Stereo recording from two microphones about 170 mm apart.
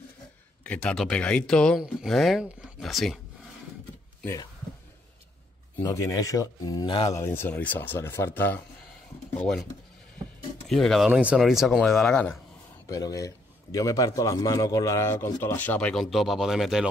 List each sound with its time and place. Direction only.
0.7 s speech: 5° left (ahead or behind)
5.8 s speech: 20° left (ahead or behind)
7.2 s a man's voice: 15° left (ahead or behind)
10.7 s speech: centre (ahead or behind)
11.1 s speech: 10° right (ahead or behind)
12.8 s a man's voice: 20° left (ahead or behind); by 16.9 s centre (ahead or behind)